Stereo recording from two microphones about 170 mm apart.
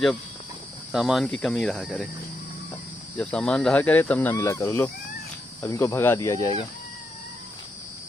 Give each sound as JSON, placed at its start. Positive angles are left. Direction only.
{"t": 0.9, "sound": "speech", "side_deg": 0}
{"t": 3.2, "sound": "speech", "side_deg": 5}